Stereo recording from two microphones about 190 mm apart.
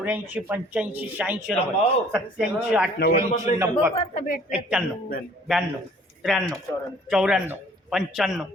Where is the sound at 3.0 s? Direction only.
55° left (ahead or behind).